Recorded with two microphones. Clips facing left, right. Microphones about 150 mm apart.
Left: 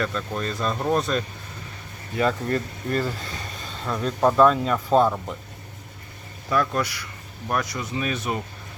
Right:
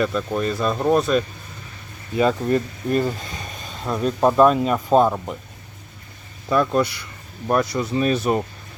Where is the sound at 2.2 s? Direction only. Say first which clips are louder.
Right 4 dB; 20° right (ahead or behind).